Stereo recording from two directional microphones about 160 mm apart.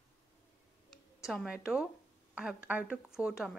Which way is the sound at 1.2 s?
5° right (ahead or behind).